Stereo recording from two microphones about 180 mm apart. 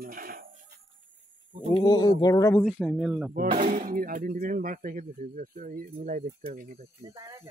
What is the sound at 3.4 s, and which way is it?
Speech, 50° right (ahead or behind).